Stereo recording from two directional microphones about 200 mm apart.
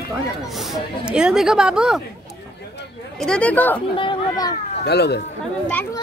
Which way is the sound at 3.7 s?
25° left (ahead or behind).